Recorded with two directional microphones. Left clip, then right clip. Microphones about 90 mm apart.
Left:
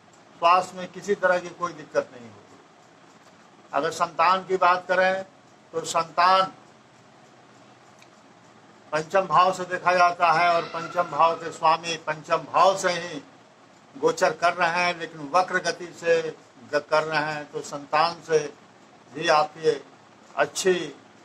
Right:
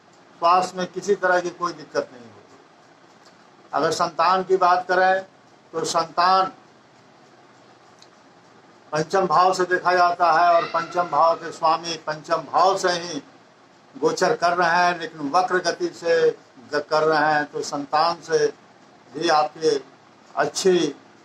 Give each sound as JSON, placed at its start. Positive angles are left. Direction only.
{"t": 0.4, "sound": "a man's voice", "side_deg": -25}
{"t": 3.7, "sound": "a man's voice", "side_deg": -30}
{"t": 8.9, "sound": "a man's voice", "side_deg": -30}